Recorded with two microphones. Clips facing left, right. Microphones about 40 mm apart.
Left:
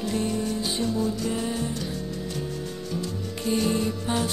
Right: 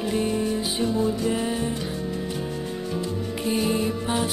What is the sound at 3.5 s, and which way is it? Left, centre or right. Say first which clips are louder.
Music: even; centre.